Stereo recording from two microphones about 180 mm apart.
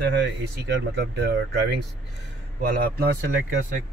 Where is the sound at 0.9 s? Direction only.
65° right (ahead or behind).